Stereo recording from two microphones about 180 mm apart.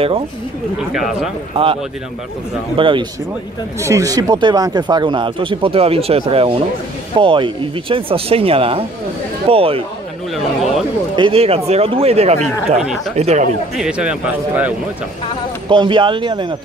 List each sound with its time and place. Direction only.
0.9 s speech: centre (ahead or behind)
1.6 s speech: 30° right (ahead or behind)
2.8 s speech: 30° right (ahead or behind)
3.8 s speech: 15° right (ahead or behind)
10.3 s speech: centre (ahead or behind)
11.1 s speech: 30° right (ahead or behind)
13.7 s speech: 5° right (ahead or behind)
15.7 s speech: 25° right (ahead or behind)